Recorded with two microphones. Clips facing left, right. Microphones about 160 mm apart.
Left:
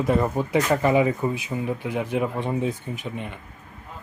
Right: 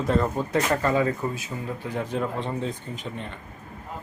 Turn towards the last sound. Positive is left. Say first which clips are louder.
# left 2 dB
turn(degrees=10)  # may be behind; listen again after turning